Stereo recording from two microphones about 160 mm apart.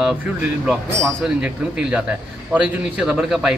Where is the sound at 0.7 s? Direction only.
Centre (ahead or behind).